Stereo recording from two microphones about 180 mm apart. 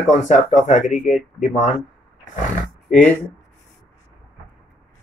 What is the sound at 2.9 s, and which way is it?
Speech, 45° left (ahead or behind).